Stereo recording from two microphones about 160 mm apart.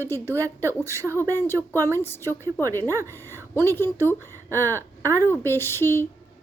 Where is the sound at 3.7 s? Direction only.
15° left (ahead or behind).